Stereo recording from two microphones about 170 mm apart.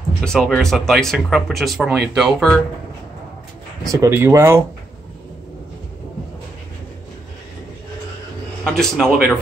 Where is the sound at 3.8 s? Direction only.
20° right (ahead or behind).